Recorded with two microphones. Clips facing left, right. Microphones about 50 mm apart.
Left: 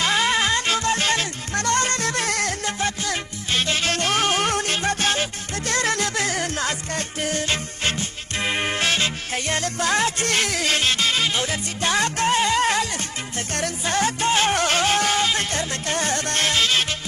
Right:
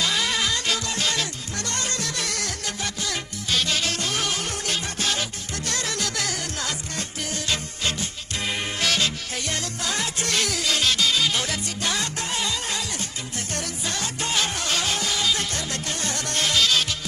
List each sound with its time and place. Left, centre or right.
0.0 s music: left
11.3 s music: left
11.9 s music: left
13.8 s music: left
14.5 s music: left